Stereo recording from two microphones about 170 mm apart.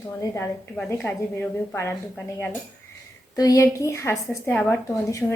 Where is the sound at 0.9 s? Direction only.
10° left (ahead or behind).